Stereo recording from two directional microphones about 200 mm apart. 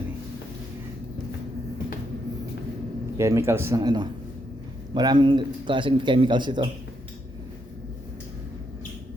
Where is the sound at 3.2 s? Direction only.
15° right (ahead or behind).